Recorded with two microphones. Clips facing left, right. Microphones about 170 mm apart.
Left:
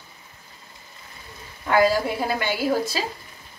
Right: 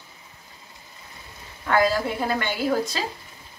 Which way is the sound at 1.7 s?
10° left (ahead or behind).